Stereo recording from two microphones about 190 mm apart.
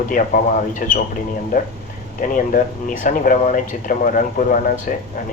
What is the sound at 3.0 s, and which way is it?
Speech, 40° left (ahead or behind).